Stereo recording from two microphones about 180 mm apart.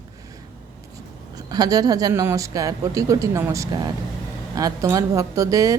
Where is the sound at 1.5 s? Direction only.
20° right (ahead or behind).